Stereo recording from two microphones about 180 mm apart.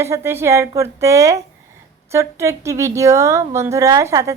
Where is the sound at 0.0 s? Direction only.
15° right (ahead or behind).